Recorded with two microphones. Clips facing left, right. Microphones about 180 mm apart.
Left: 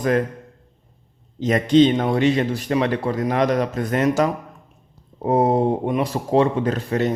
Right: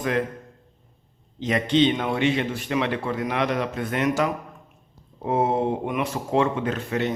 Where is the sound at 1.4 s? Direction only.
45° left (ahead or behind).